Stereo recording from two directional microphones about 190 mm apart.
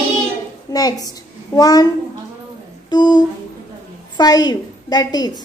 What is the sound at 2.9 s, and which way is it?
A woman's voice, 25° left (ahead or behind).